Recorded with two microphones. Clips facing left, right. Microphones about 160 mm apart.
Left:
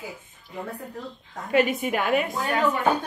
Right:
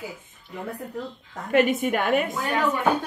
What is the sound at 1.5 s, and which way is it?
Speech, 50° right (ahead or behind).